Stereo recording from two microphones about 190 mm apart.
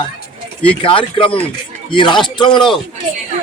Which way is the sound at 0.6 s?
30° left (ahead or behind).